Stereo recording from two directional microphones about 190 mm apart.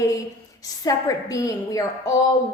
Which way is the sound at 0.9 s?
15° left (ahead or behind).